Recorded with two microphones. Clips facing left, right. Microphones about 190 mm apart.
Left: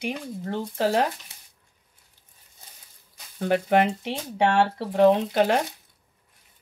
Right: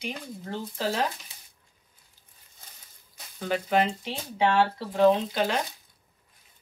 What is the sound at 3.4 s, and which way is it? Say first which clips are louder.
Speech: left 4 dB; 55° left (ahead or behind).